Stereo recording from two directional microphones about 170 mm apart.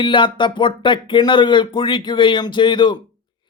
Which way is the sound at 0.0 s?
30° left (ahead or behind).